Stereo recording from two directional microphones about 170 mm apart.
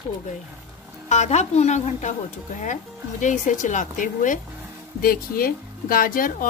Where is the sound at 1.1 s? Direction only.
40° left (ahead or behind).